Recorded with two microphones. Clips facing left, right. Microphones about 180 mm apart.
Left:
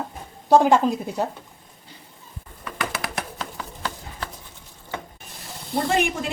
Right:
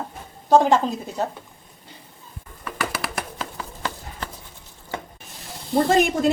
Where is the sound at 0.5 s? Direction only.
10° left (ahead or behind).